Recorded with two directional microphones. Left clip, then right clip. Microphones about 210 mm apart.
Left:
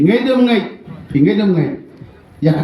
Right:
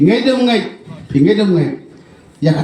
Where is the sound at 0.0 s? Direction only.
45° right (ahead or behind).